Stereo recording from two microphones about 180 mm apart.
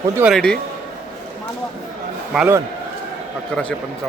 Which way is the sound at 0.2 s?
10° right (ahead or behind).